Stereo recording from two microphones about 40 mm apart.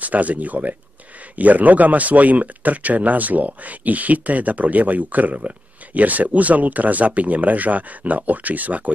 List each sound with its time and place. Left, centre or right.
0.0 s speech: right